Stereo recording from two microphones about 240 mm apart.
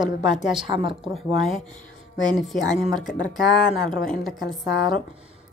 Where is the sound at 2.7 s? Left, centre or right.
Centre.